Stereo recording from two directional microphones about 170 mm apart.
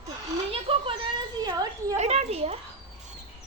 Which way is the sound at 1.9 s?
40° right (ahead or behind).